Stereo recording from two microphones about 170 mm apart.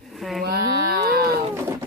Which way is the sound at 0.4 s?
65° right (ahead or behind).